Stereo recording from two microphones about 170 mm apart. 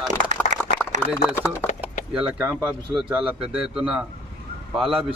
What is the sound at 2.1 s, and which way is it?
Speech, 5° right (ahead or behind).